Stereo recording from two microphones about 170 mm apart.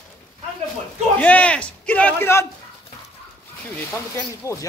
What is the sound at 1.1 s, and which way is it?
A man's voice, 10° left (ahead or behind).